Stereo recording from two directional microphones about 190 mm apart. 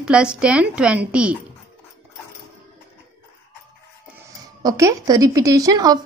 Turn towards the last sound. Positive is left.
turn(degrees=-20)  # may be behind; listen again after turning